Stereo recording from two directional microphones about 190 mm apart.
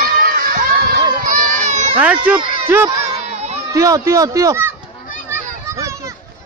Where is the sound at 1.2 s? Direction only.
45° right (ahead or behind).